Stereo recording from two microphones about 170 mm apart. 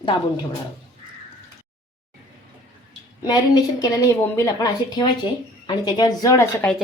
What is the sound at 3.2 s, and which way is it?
A woman's voice, 25° left (ahead or behind).